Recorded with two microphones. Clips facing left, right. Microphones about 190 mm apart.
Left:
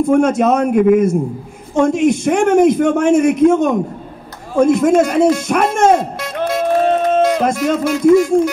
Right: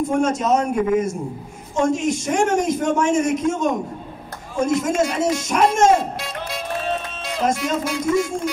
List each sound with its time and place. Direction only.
0.0 s a man's voice: 60° left (ahead or behind)